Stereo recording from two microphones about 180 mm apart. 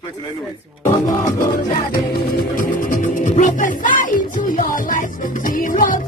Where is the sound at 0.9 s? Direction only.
20° left (ahead or behind).